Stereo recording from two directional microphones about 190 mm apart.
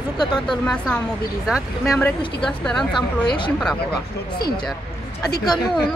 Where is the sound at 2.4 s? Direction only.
5° left (ahead or behind).